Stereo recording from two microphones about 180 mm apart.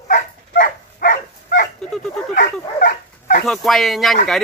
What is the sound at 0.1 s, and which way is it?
Dog, 50° left (ahead or behind).